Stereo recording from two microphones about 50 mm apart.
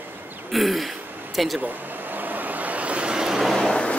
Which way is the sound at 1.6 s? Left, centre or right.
Right.